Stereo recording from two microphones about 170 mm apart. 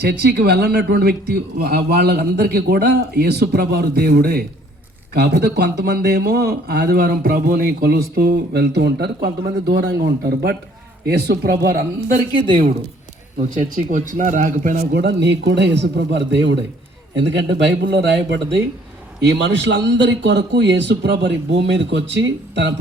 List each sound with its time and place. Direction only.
0.0 s speech: 70° right (ahead or behind)
13.6 s speech: 50° right (ahead or behind)
14.9 s a man's voice: 85° right